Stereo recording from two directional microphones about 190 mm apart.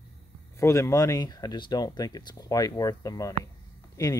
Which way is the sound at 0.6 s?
15° left (ahead or behind).